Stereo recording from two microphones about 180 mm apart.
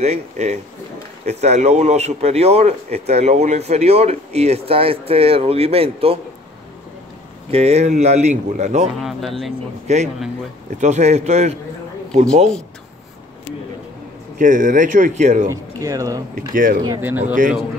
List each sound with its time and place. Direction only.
0.0 s speech: 40° right (ahead or behind)
7.5 s speech: 35° right (ahead or behind)
9.0 s speech: centre (ahead or behind)
9.9 s speech: 40° right (ahead or behind)
14.4 s speech: 45° right (ahead or behind)
15.5 s speech: 20° right (ahead or behind)
16.5 s speech: 50° right (ahead or behind)
16.8 s speech: 15° right (ahead or behind)
17.2 s speech: 45° right (ahead or behind)